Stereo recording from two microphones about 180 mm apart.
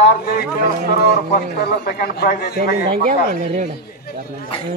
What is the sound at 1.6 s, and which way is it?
Speech, 55° left (ahead or behind).